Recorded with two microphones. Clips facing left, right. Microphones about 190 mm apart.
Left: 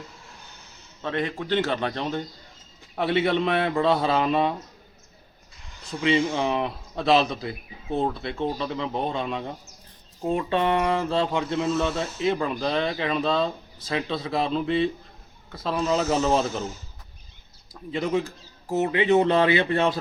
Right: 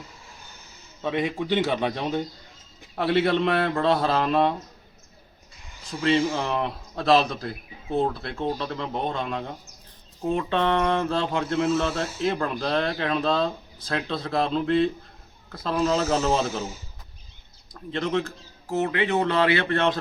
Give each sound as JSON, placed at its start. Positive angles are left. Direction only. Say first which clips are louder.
{"t": 0.1, "sound": "a sound", "louder": "even", "side_deg": -5}
{"t": 1.0, "sound": "a man's voice", "louder": "right 2 dB", "side_deg": -10}
{"t": 5.9, "sound": "speech", "louder": "even", "side_deg": 0}
{"t": 17.9, "sound": "a man's voice", "louder": "left 1 dB", "side_deg": 10}